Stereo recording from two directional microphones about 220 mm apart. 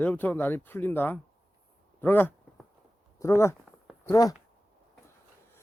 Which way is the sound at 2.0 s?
10° left (ahead or behind).